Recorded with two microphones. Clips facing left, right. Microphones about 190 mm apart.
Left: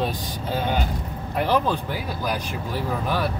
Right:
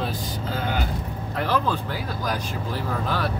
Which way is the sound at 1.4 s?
15° left (ahead or behind).